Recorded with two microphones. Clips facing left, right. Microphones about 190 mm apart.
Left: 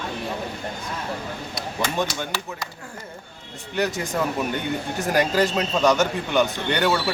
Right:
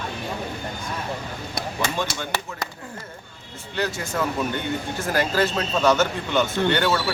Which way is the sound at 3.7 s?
15° left (ahead or behind).